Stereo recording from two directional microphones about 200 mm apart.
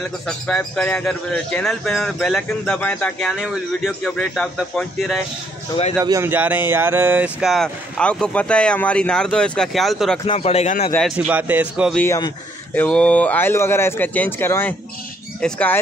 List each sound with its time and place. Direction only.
0.5 s speech: 5° left (ahead or behind)
5.9 s speech: 15° right (ahead or behind); by 10.2 s centre (ahead or behind)
10.2 s a man's voice: 30° left (ahead or behind)
10.9 s speech: centre (ahead or behind)
12.0 s speech: 15° left (ahead or behind)